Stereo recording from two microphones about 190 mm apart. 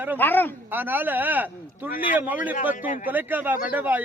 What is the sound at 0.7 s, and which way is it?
Speech, 10° right (ahead or behind).